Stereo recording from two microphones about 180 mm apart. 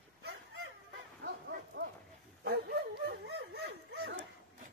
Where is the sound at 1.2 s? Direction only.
70° right (ahead or behind).